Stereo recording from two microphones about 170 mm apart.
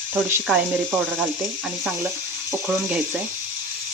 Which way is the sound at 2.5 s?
10° right (ahead or behind).